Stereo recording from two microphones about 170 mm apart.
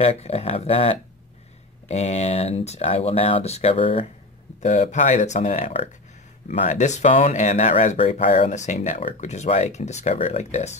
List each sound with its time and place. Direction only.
0.0 s speech: 40° left (ahead or behind)
4.6 s speech: 45° left (ahead or behind)